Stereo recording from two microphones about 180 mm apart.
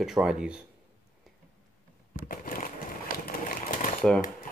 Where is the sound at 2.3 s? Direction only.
50° left (ahead or behind).